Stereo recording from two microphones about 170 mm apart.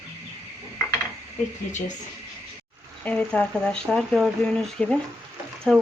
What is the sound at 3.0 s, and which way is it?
Speech, 5° left (ahead or behind).